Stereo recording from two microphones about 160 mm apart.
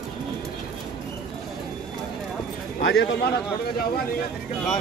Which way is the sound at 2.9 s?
90° left.